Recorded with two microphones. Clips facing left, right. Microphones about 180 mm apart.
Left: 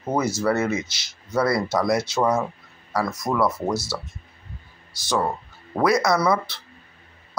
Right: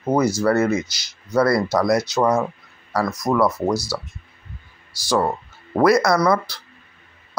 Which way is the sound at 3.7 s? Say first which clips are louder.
Right 3 dB; 25° left (ahead or behind).